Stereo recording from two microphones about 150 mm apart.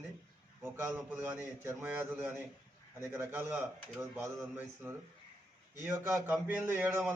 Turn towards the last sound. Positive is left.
turn(degrees=-15)  # may be behind; listen again after turning